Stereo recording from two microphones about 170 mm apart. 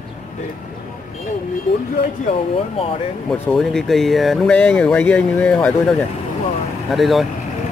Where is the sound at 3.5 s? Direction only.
Centre (ahead or behind).